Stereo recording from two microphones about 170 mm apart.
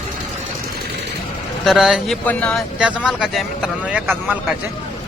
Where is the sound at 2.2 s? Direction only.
10° left (ahead or behind).